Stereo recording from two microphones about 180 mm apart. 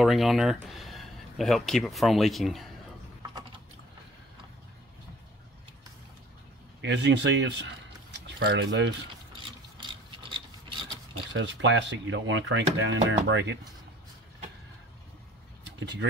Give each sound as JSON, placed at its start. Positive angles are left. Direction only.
{"t": 0.0, "sound": "speech", "side_deg": 0}
{"t": 6.8, "sound": "speech", "side_deg": -80}
{"t": 9.3, "sound": "mechanisms", "side_deg": -25}
{"t": 11.3, "sound": "speech", "side_deg": -90}
{"t": 15.8, "sound": "speech", "side_deg": -75}